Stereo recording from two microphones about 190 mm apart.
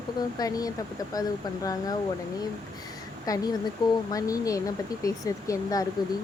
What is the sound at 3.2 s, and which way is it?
A woman's voice, 20° left (ahead or behind).